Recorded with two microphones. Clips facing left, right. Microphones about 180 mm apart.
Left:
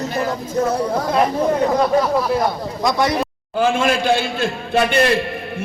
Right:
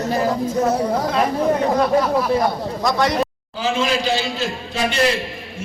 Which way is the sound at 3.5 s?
55° left (ahead or behind).